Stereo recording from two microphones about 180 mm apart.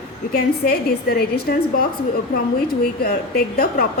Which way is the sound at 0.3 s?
60° left (ahead or behind).